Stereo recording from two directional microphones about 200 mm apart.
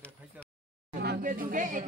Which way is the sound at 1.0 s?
45° right (ahead or behind).